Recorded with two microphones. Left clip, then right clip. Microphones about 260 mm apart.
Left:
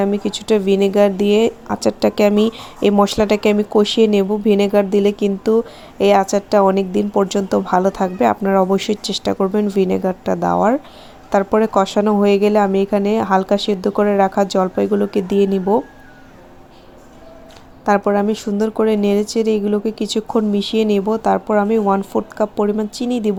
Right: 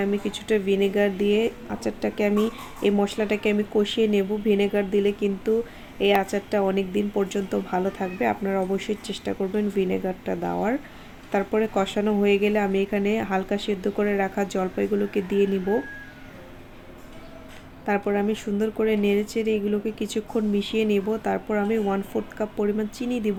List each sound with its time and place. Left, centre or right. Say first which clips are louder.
0.0 s a woman's voice: left 7 dB; left
17.8 s a woman's voice: left 9 dB; left